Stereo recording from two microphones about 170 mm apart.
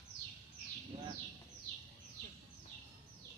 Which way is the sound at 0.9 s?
40° right (ahead or behind).